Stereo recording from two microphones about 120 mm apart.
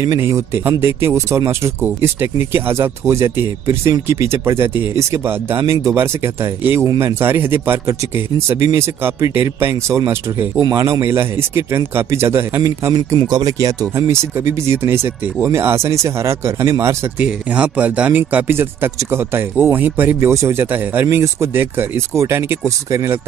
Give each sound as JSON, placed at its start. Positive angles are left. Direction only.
{"t": 0.0, "sound": "speech", "side_deg": -25}
{"t": 17.2, "sound": "speech", "side_deg": -10}